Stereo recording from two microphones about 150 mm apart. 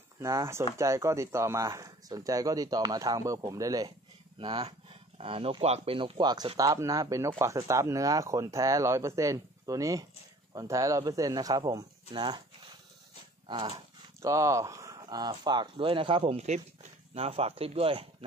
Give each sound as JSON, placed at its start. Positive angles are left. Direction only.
{"t": 0.2, "sound": "speech", "side_deg": -20}
{"t": 13.5, "sound": "speech", "side_deg": -35}
{"t": 14.2, "sound": "speech", "side_deg": -20}